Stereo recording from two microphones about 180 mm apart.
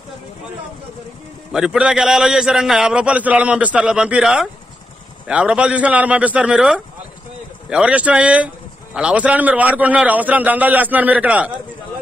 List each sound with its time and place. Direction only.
1.5 s a man's voice: 5° right (ahead or behind)